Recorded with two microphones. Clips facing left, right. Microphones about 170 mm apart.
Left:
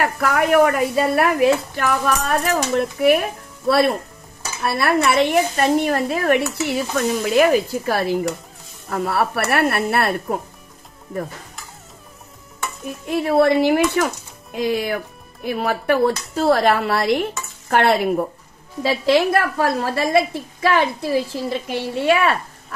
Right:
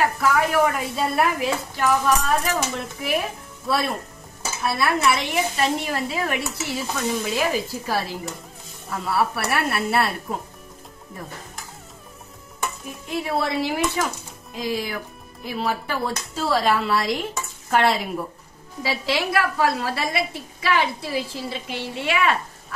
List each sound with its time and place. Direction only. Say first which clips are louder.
0.0 s a woman's voice: left 1 dB; 60° left (ahead or behind)
13.1 s a woman's voice: left 9 dB; 55° left (ahead or behind); by 22.4 s 40° left (ahead or behind)